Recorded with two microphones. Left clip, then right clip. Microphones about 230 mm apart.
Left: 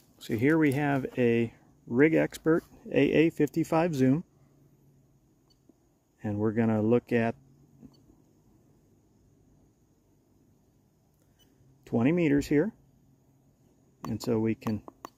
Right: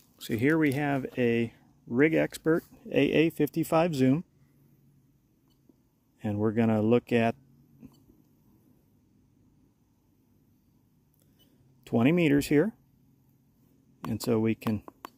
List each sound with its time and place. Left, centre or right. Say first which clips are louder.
0.2 s speech: left 1 dB; centre
6.1 s speech: right 1 dB; centre
11.8 s speech: right 2 dB; centre
14.0 s speech: right 1 dB; centre
14.9 s a sound: even; centre